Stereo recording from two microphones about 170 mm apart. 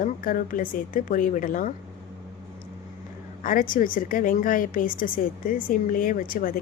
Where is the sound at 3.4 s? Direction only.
55° left (ahead or behind).